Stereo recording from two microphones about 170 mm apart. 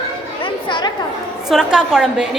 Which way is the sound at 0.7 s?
25° left (ahead or behind).